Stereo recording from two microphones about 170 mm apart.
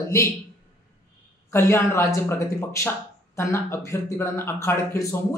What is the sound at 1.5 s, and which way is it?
Speech, 15° left (ahead or behind).